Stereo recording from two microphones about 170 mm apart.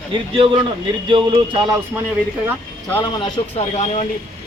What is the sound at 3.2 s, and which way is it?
Speech, 35° left (ahead or behind).